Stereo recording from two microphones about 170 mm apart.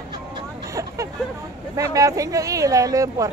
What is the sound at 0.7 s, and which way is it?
Hubbub, 20° right (ahead or behind).